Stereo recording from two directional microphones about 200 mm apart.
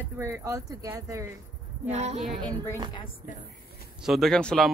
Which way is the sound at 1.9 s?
35° right (ahead or behind).